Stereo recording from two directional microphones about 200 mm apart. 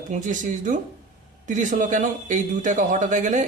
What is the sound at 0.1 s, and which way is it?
A man's voice, 40° right (ahead or behind).